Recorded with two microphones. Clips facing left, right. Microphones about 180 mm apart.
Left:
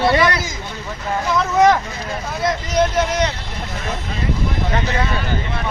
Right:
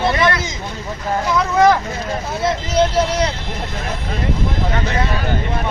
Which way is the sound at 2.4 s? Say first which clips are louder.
Right 1 dB; 30° right (ahead or behind).